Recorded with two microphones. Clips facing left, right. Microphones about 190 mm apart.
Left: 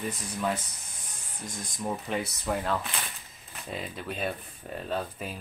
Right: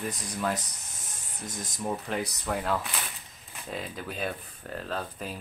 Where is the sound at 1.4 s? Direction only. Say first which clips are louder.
Right 1 dB; 20° right (ahead or behind).